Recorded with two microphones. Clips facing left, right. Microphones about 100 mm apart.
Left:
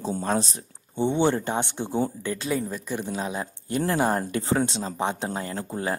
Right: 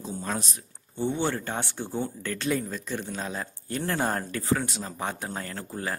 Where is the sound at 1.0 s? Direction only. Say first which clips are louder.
Left 5 dB; 20° left (ahead or behind).